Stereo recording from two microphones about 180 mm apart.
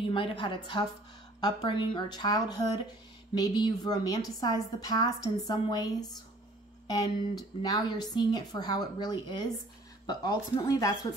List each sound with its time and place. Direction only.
0.1 s a woman's voice: 30° left (ahead or behind)